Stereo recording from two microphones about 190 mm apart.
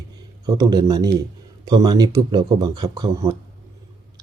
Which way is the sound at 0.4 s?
20° right (ahead or behind).